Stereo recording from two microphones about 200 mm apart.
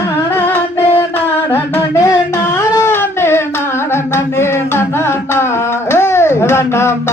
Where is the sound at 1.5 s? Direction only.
10° left (ahead or behind).